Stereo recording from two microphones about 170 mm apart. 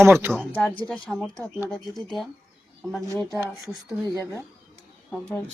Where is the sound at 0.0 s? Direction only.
15° right (ahead or behind).